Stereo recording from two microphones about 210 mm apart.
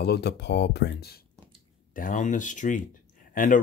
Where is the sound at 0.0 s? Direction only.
50° left (ahead or behind).